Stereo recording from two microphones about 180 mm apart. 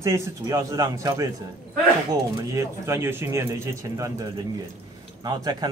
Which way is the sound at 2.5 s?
15° right (ahead or behind).